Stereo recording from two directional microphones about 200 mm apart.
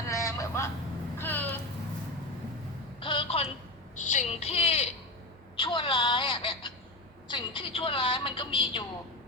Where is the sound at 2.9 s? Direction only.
25° left (ahead or behind).